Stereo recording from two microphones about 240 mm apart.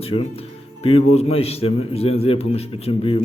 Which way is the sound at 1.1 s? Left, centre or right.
Left.